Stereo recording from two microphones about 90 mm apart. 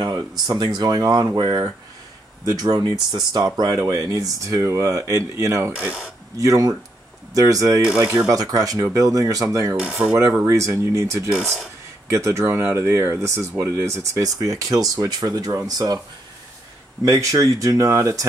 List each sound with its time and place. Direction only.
0.0 s speech: 45° right (ahead or behind)
9.8 s speech: 10° right (ahead or behind)
10.5 s speech: 35° right (ahead or behind)
11.4 s speech: centre (ahead or behind)
12.1 s speech: 35° right (ahead or behind)
14.2 s speech: 40° right (ahead or behind)
17.0 s speech: 35° right (ahead or behind)